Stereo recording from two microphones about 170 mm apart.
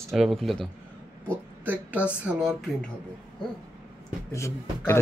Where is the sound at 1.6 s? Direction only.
10° right (ahead or behind).